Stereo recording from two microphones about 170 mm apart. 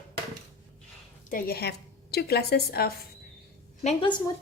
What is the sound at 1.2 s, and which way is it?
A woman's voice, 60° left (ahead or behind).